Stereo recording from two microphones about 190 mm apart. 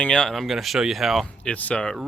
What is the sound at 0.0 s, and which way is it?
Speech, 5° left (ahead or behind).